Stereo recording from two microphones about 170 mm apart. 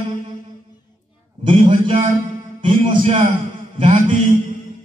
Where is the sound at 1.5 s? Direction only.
35° right (ahead or behind).